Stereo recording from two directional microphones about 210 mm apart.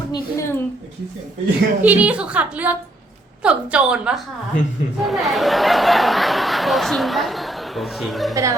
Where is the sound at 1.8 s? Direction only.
5° right (ahead or behind).